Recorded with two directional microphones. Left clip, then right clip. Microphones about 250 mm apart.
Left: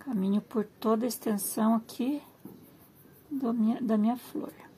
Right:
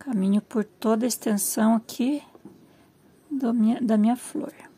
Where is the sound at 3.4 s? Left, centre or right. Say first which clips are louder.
Right 6 dB; right.